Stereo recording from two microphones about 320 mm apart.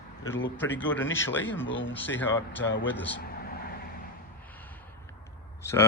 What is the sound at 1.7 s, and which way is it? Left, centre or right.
Speech, left.